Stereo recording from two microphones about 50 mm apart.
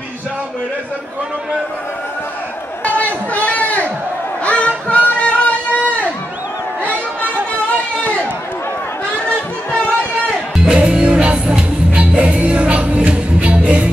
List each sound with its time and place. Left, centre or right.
2.8 s a sound: left
4.5 s music: left
6.8 s chatter: left
10.5 s music: centre